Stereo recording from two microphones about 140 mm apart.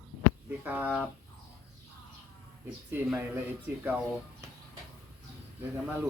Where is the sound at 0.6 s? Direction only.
10° right (ahead or behind).